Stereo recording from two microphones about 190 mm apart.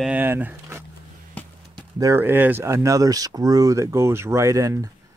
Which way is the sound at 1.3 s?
10° left (ahead or behind).